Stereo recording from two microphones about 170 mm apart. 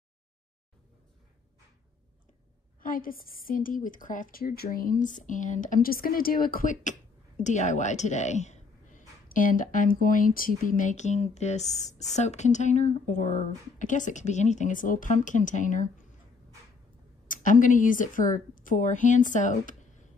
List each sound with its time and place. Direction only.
2.8 s a woman's voice: 55° left (ahead or behind)
17.3 s a woman's voice: 50° left (ahead or behind)